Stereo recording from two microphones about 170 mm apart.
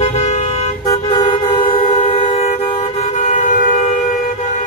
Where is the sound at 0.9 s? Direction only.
30° left (ahead or behind).